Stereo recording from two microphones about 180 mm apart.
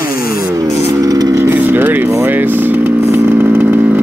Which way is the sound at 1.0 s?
20° right (ahead or behind).